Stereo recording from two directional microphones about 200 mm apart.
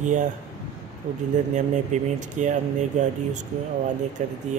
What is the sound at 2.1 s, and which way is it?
Speech, 40° right (ahead or behind).